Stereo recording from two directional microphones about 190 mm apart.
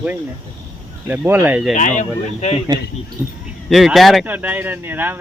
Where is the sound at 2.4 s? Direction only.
35° left (ahead or behind).